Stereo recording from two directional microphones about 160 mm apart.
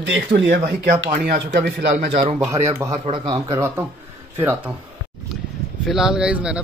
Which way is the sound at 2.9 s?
35° right (ahead or behind).